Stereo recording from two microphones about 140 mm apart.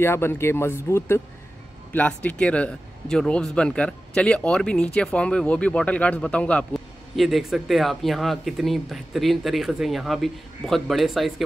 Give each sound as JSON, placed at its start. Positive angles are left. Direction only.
{"t": 0.0, "sound": "speech", "side_deg": 15}